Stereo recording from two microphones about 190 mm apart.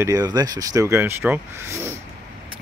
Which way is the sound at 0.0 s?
20° right (ahead or behind).